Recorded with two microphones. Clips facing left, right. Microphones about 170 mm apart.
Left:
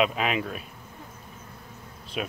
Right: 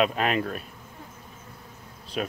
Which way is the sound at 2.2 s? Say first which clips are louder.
Right 2 dB; 5° left (ahead or behind).